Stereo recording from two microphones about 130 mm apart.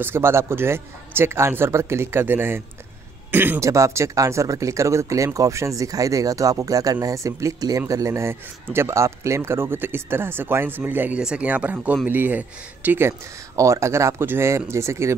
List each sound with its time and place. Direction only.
0.0 s speech: 20° right (ahead or behind)